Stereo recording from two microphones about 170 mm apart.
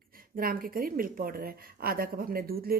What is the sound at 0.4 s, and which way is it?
A woman's voice, 60° right (ahead or behind).